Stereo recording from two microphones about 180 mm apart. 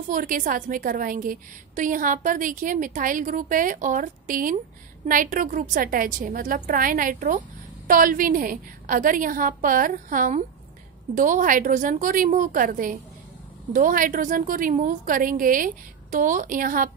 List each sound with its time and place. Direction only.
0.1 s a woman's voice: 50° right (ahead or behind)